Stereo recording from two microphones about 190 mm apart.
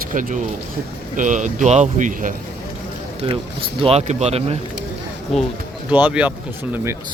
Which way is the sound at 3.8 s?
30° right (ahead or behind).